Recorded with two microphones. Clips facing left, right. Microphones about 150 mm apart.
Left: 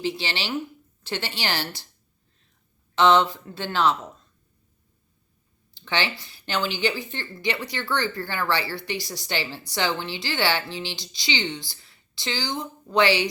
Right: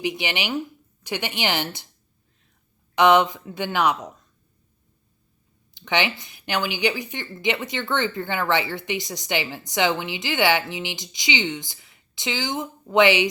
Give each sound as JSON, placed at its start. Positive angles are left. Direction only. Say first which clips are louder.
{"t": 0.0, "sound": "a woman's voice", "louder": "right 2 dB", "side_deg": -15}
{"t": 2.9, "sound": "speech", "louder": "right 2 dB", "side_deg": -15}
{"t": 5.7, "sound": "a woman's voice", "louder": "right 3 dB", "side_deg": -20}